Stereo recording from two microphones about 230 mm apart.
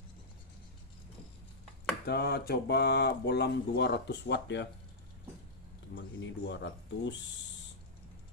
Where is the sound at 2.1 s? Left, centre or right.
Left.